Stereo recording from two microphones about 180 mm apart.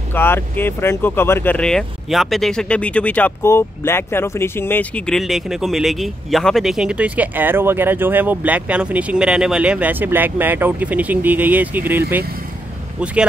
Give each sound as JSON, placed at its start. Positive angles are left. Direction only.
{"t": 0.1, "sound": "speech", "side_deg": 10}
{"t": 13.0, "sound": "speech", "side_deg": -5}